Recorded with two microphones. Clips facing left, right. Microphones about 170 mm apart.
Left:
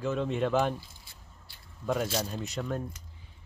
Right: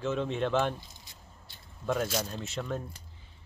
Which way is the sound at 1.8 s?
Centre (ahead or behind).